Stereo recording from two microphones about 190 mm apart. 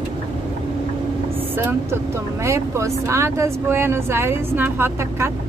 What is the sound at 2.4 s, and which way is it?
Speech, 15° right (ahead or behind).